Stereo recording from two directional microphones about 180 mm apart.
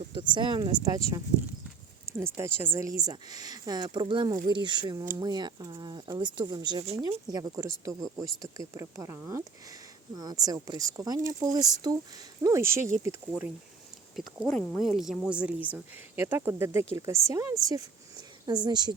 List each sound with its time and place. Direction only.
0.1 s speech: 25° right (ahead or behind)
2.1 s speech: 15° right (ahead or behind)
14.2 s speech: centre (ahead or behind); by 18.9 s 25° right (ahead or behind)